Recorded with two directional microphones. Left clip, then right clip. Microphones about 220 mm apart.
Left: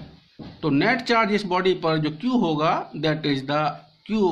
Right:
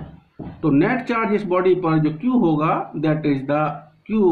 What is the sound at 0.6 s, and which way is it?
Speech, 45° left (ahead or behind).